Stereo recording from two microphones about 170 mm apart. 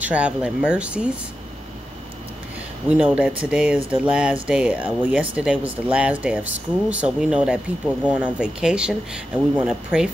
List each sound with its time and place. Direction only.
0.0 s speech: 10° right (ahead or behind)
2.9 s speech: 10° right (ahead or behind)